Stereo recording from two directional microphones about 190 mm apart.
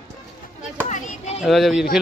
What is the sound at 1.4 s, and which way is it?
Speech, centre (ahead or behind).